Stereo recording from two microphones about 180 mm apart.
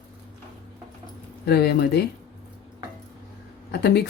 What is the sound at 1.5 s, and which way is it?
Speech, 65° left (ahead or behind).